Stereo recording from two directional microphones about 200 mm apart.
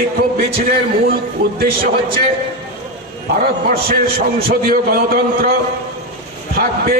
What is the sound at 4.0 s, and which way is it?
A man's voice, 50° right (ahead or behind).